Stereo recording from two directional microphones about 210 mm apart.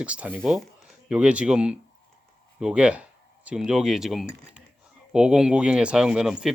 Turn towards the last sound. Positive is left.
turn(degrees=0)  # may be behind; listen again after turning